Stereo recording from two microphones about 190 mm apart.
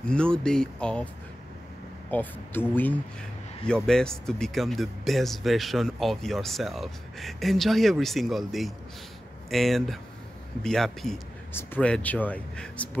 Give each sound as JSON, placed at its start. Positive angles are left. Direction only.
{"t": 0.0, "sound": "speech", "side_deg": 5}
{"t": 2.0, "sound": "speech", "side_deg": 10}